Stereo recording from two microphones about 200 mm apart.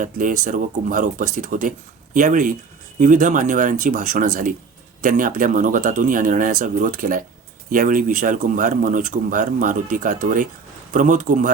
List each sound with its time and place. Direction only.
0.0 s speech: 40° right (ahead or behind)